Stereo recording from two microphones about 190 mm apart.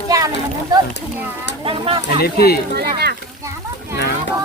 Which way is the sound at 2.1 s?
55° left (ahead or behind).